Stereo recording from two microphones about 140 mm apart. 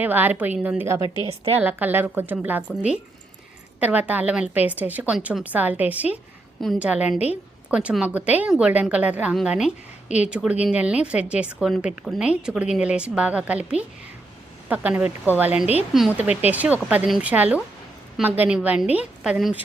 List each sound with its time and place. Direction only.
0.0 s a woman's voice: 15° right (ahead or behind)
1.2 s a woman's voice: 45° right (ahead or behind)
1.5 s a woman's voice: 15° right (ahead or behind)